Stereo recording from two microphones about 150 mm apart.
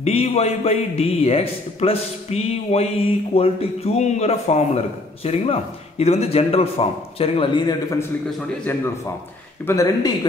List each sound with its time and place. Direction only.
0.0 s a man's voice: 40° left (ahead or behind)
9.7 s speech: 20° left (ahead or behind)